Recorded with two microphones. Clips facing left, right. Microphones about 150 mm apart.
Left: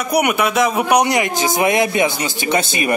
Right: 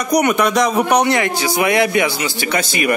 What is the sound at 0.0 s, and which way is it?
A man's voice, 10° left (ahead or behind).